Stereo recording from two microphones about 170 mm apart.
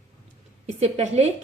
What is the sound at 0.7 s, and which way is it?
Speech, 40° right (ahead or behind).